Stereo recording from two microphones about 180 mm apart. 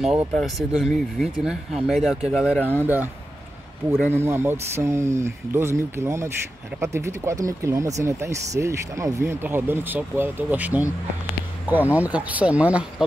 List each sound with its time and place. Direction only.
0.0 s speech: 5° right (ahead or behind)
4.0 s speech: 15° right (ahead or behind)